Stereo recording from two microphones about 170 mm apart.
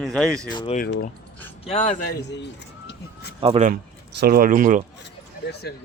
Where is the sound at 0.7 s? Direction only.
60° left (ahead or behind).